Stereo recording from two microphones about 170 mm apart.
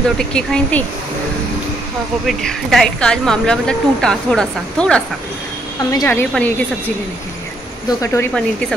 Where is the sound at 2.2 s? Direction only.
Centre (ahead or behind).